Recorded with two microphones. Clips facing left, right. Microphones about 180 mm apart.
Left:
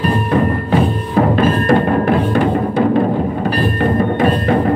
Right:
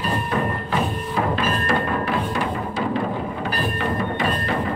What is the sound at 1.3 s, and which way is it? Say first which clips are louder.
Music: left 11 dB; 55° left (ahead or behind).